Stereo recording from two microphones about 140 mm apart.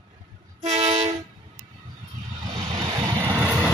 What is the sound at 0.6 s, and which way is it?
Train, 50° right (ahead or behind).